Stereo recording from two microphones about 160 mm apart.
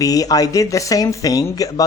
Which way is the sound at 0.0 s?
20° left (ahead or behind).